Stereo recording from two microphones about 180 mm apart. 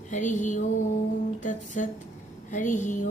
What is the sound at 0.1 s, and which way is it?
Music, 45° left (ahead or behind).